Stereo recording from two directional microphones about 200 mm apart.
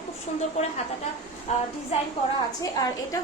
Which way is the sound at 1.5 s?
35° left (ahead or behind).